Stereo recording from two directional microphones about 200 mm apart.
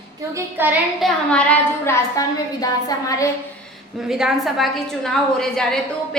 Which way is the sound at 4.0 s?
5° right (ahead or behind).